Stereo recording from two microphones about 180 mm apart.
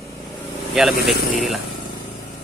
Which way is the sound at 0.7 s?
Centre (ahead or behind).